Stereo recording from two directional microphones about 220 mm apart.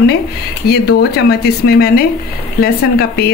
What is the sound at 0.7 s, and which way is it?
A woman's voice, 45° left (ahead or behind).